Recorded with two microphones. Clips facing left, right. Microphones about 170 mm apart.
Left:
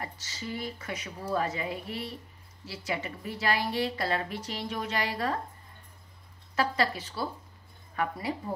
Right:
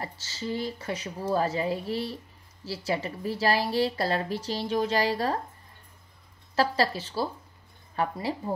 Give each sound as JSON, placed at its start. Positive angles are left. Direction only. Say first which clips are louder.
{"t": 0.0, "sound": "a woman's voice", "louder": "right 4 dB", "side_deg": -30}
{"t": 6.5, "sound": "a woman's voice", "louder": "right 3 dB", "side_deg": -35}